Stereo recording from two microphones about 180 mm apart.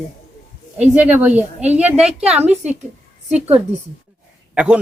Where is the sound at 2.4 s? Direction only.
40° right (ahead or behind).